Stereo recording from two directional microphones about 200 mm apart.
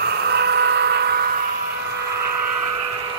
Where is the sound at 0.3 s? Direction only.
55° right (ahead or behind).